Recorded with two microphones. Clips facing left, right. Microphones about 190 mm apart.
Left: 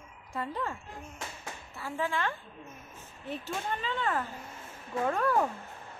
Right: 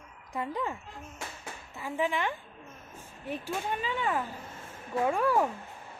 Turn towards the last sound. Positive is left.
turn(degrees=-10)  # may be behind; listen again after turning